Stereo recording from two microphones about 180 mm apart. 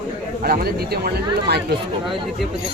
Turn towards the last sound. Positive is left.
turn(degrees=-65)  # may be behind; listen again after turning